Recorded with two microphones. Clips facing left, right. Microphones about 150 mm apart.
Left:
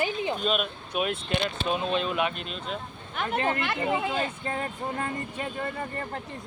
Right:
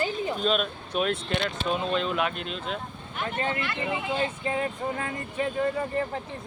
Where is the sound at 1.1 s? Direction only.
15° left (ahead or behind); by 2.8 s centre (ahead or behind).